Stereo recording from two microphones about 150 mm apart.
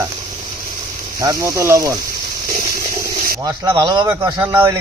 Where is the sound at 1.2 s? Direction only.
20° right (ahead or behind).